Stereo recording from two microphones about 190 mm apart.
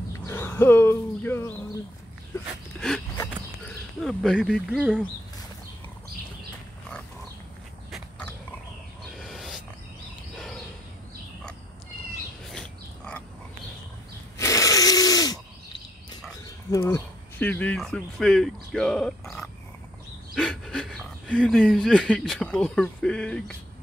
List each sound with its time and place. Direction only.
0.3 s speech: 15° left (ahead or behind)
4.7 s speech: 5° right (ahead or behind)
7.9 s pig: 10° left (ahead or behind)
9.2 s wild animals: centre (ahead or behind)
10.3 s a sound: centre (ahead or behind)
12.4 s dog: 5° left (ahead or behind)
14.4 s a sound: 15° left (ahead or behind)
16.7 s speech: 15° left (ahead or behind)